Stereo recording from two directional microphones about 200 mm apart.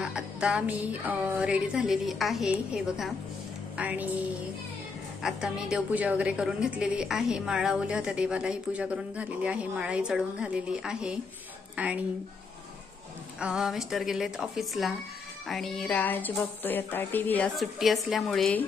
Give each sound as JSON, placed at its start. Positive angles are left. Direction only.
{"t": 0.0, "sound": "a woman's voice", "side_deg": -5}
{"t": 13.4, "sound": "a woman's voice", "side_deg": -5}